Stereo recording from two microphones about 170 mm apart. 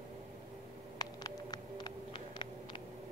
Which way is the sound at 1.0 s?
25° left (ahead or behind).